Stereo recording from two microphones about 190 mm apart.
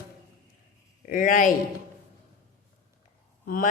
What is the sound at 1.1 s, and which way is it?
Speech, 45° left (ahead or behind).